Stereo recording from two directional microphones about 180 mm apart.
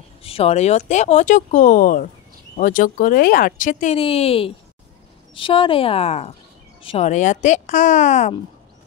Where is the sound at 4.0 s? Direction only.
30° left (ahead or behind).